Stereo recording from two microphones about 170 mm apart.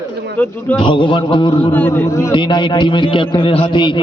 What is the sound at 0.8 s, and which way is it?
Speech, 30° left (ahead or behind).